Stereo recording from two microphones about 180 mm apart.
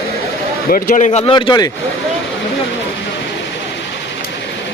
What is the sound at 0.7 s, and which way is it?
Speech, 45° left (ahead or behind).